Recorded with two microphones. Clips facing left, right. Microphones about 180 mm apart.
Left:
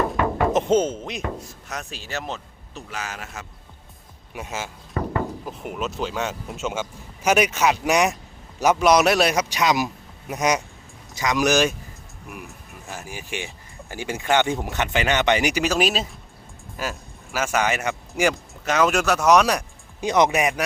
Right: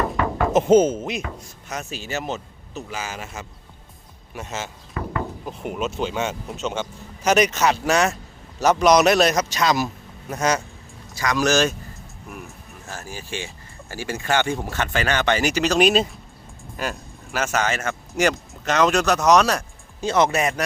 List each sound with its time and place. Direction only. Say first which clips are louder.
0.5 s speech: right 8 dB; 5° right (ahead or behind); by 4.7 s 10° left (ahead or behind)
4.9 s a sound: left 3 dB; 35° left (ahead or behind)
5.5 s speech: right 2 dB; centre (ahead or behind)
12.9 s speech: even; 15° left (ahead or behind)